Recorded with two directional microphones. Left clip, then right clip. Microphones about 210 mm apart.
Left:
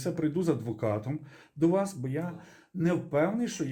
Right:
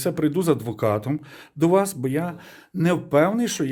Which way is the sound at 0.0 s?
40° right (ahead or behind).